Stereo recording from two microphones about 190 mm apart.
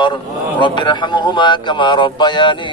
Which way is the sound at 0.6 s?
25° left (ahead or behind).